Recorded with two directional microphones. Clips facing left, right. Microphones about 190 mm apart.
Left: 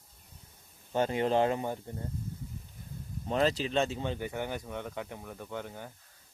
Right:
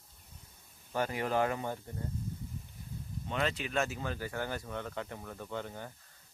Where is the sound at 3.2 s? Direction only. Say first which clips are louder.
Left 6 dB; 35° left (ahead or behind); by 5.9 s 10° left (ahead or behind).